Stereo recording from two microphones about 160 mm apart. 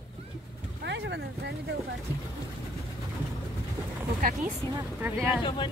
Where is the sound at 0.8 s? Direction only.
90° right.